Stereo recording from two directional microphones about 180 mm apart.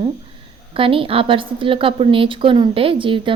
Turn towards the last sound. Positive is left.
turn(degrees=-30)  # may be behind; listen again after turning